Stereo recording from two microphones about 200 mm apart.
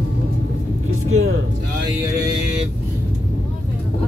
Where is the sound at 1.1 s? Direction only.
90° right.